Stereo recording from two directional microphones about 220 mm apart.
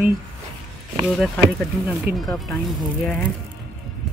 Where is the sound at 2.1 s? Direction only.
45° right (ahead or behind).